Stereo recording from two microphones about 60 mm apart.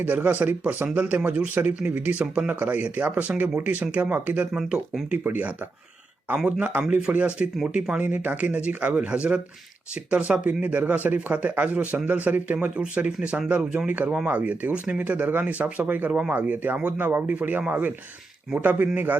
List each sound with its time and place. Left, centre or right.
0.0 s speech: right
8.0 s speech: right